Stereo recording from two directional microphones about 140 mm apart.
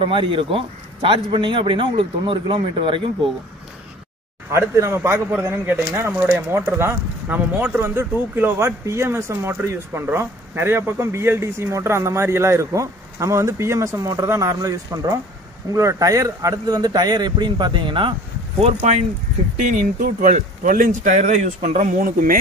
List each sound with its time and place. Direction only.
0.0 s a man's voice: 40° right (ahead or behind)
4.5 s speech: 20° right (ahead or behind); by 18.1 s 35° right (ahead or behind)
18.6 s speech: 50° right (ahead or behind)
19.7 s speech: 70° right (ahead or behind)